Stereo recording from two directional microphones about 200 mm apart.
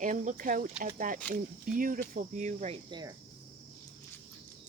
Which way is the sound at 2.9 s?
20° right (ahead or behind).